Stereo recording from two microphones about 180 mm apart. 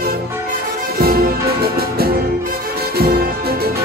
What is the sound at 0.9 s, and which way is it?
Music, 55° right (ahead or behind).